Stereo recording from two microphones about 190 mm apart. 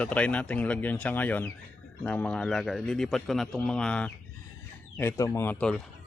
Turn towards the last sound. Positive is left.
turn(degrees=5)  # may be behind; listen again after turning